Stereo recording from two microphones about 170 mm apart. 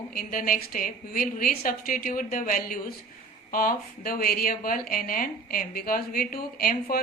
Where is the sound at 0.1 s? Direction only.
55° left (ahead or behind).